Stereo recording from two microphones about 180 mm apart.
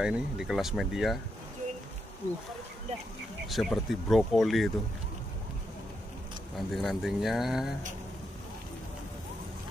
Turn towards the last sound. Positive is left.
turn(degrees=0)  # may be behind; listen again after turning